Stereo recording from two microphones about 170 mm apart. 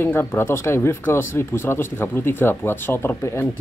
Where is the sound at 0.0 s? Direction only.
15° left (ahead or behind).